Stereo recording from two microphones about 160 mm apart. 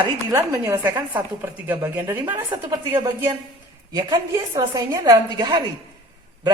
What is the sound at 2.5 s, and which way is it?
A woman's voice, 25° right (ahead or behind).